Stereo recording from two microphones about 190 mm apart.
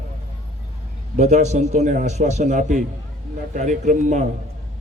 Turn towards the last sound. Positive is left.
turn(degrees=-40)  # may be behind; listen again after turning